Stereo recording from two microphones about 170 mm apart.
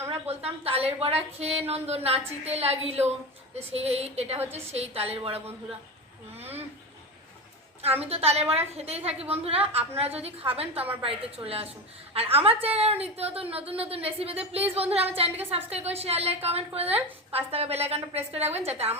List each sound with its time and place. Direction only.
0.1 s a woman's voice: 35° right (ahead or behind)
6.3 s a sound: 35° right (ahead or behind)
8.1 s a woman's voice: 35° right (ahead or behind)